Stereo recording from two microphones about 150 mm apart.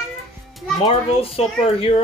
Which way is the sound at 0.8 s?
35° left (ahead or behind).